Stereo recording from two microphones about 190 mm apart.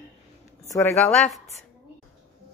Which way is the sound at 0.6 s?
15° left (ahead or behind).